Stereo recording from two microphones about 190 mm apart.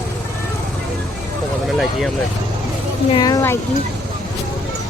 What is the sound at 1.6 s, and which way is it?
Speech, centre (ahead or behind).